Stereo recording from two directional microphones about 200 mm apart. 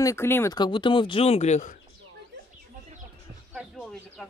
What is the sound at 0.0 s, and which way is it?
Speech, 15° left (ahead or behind).